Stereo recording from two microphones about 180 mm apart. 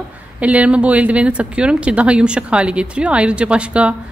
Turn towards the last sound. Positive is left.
turn(degrees=-5)  # may be behind; listen again after turning